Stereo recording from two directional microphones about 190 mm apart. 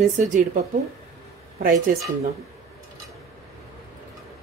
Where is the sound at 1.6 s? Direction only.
45° right (ahead or behind).